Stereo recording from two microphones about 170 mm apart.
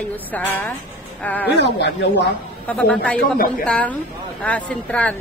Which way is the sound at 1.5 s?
85° left.